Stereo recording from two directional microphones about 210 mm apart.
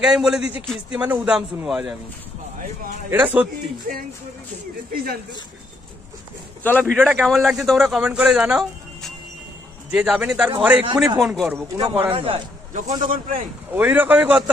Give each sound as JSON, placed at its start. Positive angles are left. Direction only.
{"t": 0.0, "sound": "speech", "side_deg": -5}
{"t": 3.1, "sound": "speech", "side_deg": -10}
{"t": 3.9, "sound": "speech", "side_deg": -45}
{"t": 6.6, "sound": "speech", "side_deg": 5}
{"t": 11.7, "sound": "speech", "side_deg": -20}
{"t": 12.2, "sound": "a man's voice", "side_deg": -30}
{"t": 13.7, "sound": "speech", "side_deg": -10}